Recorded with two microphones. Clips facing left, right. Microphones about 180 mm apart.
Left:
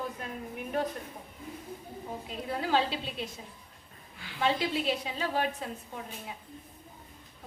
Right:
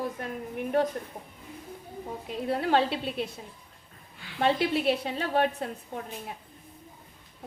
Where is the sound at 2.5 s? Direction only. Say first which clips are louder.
Right 4 dB; 60° right (ahead or behind).